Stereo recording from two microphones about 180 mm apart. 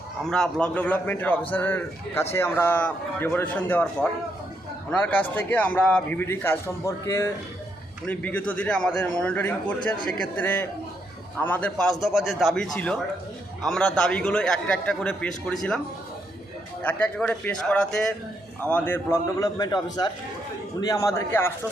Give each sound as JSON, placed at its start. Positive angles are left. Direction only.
{"t": 0.3, "sound": "a man's voice", "side_deg": 5}
{"t": 16.8, "sound": "a man's voice", "side_deg": 5}